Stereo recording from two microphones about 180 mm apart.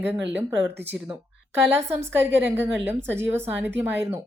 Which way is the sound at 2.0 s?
15° right (ahead or behind).